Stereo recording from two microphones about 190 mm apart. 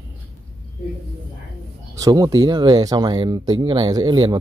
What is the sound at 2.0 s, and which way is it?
Speech, 20° right (ahead or behind).